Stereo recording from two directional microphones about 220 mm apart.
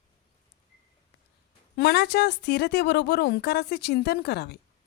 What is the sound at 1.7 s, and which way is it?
Speech, 45° left (ahead or behind).